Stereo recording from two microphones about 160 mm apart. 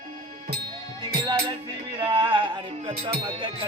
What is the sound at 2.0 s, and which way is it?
Music, 30° right (ahead or behind).